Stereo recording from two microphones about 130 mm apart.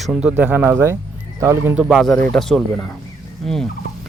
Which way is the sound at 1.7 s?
5° right (ahead or behind).